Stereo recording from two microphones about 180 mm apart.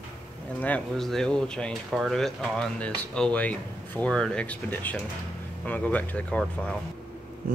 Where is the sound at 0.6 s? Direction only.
5° left (ahead or behind).